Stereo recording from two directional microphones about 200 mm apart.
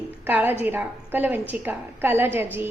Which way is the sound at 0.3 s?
10° right (ahead or behind).